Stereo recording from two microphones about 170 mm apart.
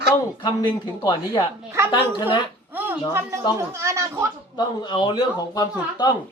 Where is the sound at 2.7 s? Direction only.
15° right (ahead or behind).